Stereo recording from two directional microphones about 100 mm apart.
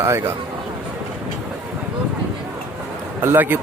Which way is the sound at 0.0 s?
25° right (ahead or behind).